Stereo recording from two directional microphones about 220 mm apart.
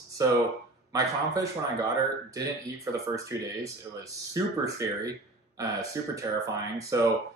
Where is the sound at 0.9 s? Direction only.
15° right (ahead or behind).